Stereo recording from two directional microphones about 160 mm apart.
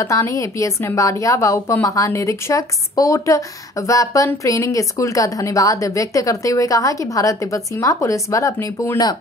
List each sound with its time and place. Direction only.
0.0 s a woman's voice: 20° left (ahead or behind)